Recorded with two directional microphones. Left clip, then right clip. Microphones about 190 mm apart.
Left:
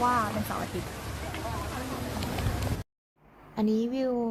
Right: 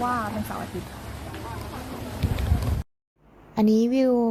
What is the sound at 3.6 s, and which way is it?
Speech, 35° right (ahead or behind).